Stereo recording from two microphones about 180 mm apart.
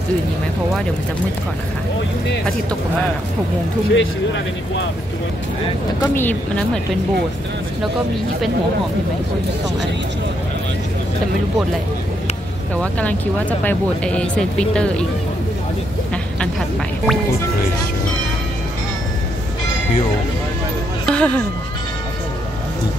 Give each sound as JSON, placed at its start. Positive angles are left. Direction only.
{"t": 3.9, "sound": "speech", "side_deg": 90}
{"t": 5.9, "sound": "speech", "side_deg": 10}
{"t": 12.7, "sound": "speech", "side_deg": 10}
{"t": 21.0, "sound": "music", "side_deg": 5}